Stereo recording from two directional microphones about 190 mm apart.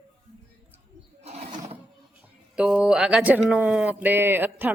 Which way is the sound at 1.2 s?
35° right (ahead or behind).